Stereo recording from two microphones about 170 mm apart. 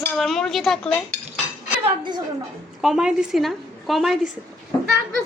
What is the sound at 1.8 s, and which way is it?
Speech, 25° right (ahead or behind).